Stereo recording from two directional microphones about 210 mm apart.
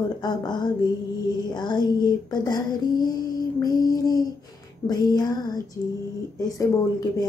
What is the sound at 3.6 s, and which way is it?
Mantra, 20° left (ahead or behind).